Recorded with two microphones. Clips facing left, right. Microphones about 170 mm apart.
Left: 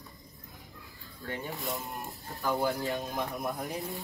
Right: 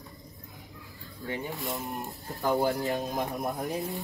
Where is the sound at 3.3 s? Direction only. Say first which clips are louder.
Right 3 dB; centre (ahead or behind).